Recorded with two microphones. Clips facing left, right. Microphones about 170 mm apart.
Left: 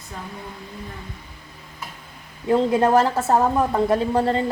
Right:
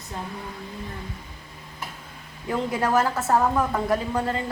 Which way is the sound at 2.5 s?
30° left (ahead or behind).